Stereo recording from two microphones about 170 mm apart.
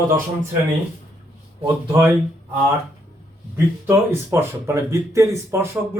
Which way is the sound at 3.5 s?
15° right (ahead or behind).